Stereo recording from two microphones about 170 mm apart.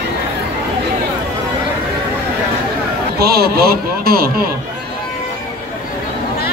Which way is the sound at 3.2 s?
65° right (ahead or behind).